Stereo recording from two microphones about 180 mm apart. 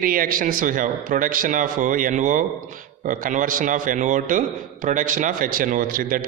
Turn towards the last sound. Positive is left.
turn(degrees=-50)  # may be behind; listen again after turning